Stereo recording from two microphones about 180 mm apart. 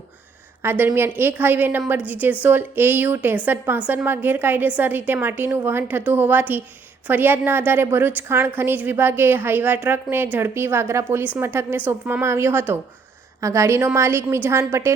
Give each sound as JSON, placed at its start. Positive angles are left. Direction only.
{"t": 0.6, "sound": "a woman's voice", "side_deg": -15}